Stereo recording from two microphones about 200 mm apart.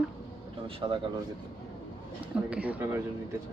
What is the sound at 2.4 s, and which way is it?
Speech, 5° right (ahead or behind).